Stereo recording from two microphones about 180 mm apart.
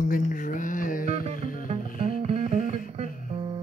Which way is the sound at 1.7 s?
40° right (ahead or behind).